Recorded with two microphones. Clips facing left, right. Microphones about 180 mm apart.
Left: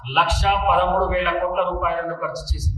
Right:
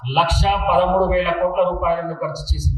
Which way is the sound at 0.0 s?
30° right (ahead or behind).